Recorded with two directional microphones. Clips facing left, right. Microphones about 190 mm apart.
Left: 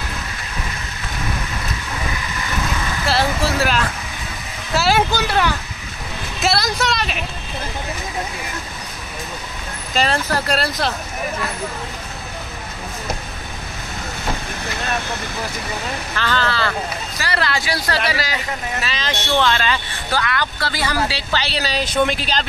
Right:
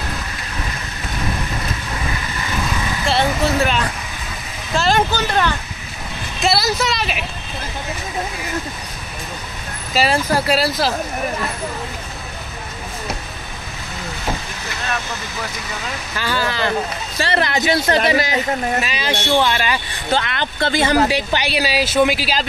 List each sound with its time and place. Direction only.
3.1 s a sound: centre (ahead or behind)
6.4 s speech: centre (ahead or behind)
9.9 s speech: 10° right (ahead or behind)
16.2 s speech: 10° right (ahead or behind)
20.1 s speech: 25° right (ahead or behind); by 22.5 s 5° right (ahead or behind)